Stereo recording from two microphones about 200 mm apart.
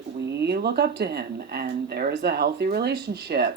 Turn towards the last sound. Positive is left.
turn(degrees=-55)  # may be behind; listen again after turning